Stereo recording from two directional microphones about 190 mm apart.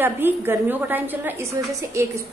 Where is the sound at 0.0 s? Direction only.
10° right (ahead or behind).